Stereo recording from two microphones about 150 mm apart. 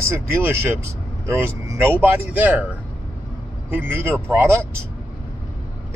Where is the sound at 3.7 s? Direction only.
15° right (ahead or behind).